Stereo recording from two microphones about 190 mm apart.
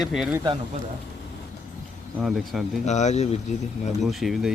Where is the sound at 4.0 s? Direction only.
Centre (ahead or behind).